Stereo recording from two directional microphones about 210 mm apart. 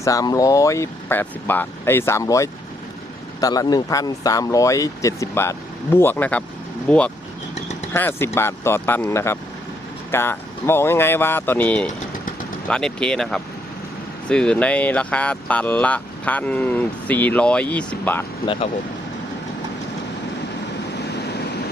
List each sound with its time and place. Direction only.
0.0 s speech: 15° left (ahead or behind)
18.4 s speech: 25° left (ahead or behind)
20.9 s vehicle: 55° left (ahead or behind)